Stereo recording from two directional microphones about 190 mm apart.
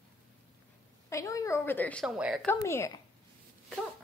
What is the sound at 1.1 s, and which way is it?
A woman's voice, 15° left (ahead or behind).